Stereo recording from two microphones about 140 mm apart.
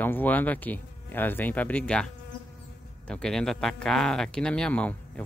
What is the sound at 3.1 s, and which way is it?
Speech, 5° left (ahead or behind).